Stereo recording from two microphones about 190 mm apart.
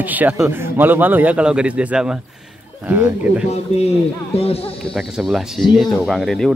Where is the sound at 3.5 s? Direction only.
35° left (ahead or behind).